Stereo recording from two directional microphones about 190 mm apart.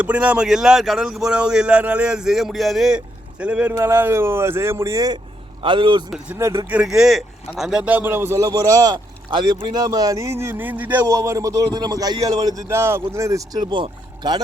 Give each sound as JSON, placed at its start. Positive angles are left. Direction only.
{"t": 0.0, "sound": "a man's voice", "side_deg": -10}
{"t": 6.1, "sound": "speech", "side_deg": -10}